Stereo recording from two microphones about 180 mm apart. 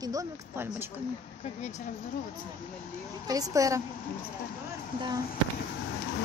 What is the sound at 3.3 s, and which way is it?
Speech, 20° right (ahead or behind).